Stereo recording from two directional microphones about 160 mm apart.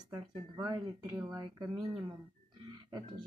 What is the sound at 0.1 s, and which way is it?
Speech, 30° right (ahead or behind).